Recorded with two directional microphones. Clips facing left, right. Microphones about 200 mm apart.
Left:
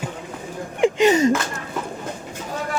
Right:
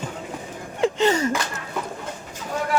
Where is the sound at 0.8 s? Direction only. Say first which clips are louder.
Left 4 dB; 15° left (ahead or behind).